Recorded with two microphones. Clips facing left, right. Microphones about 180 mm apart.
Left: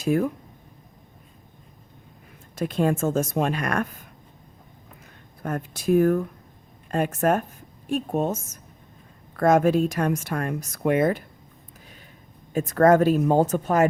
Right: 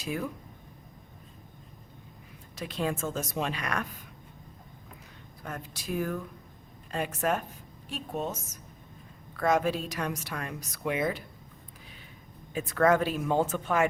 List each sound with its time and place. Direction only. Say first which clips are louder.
0.0 s speech: left 11 dB; 50° left (ahead or behind)
2.6 s speech: left 9 dB; 50° left (ahead or behind)
5.4 s speech: left 10 dB; 50° left (ahead or behind)
12.5 s speech: left 7 dB; 45° left (ahead or behind)